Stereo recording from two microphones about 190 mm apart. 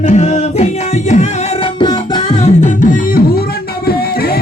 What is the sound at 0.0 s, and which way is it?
Music, 40° left (ahead or behind).